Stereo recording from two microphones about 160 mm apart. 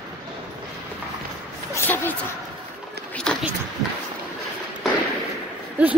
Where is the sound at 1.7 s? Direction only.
15° left (ahead or behind).